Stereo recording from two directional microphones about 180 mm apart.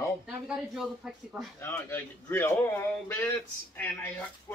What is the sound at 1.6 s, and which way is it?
A man's voice, 15° left (ahead or behind).